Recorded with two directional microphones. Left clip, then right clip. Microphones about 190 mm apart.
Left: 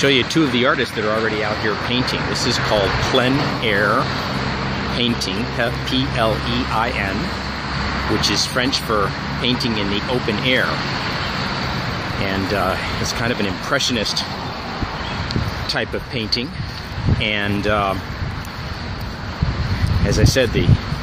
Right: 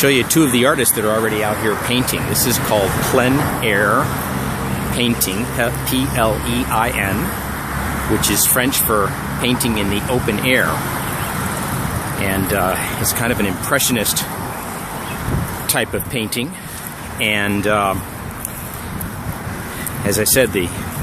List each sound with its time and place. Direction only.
0.0 s speech: 10° right (ahead or behind)
1.9 s speech: 10° right (ahead or behind)
8.3 s speech: 10° right (ahead or behind)
12.2 s speech: 10° right (ahead or behind)
15.7 s speech: 15° right (ahead or behind)
20.1 s speech: 10° right (ahead or behind)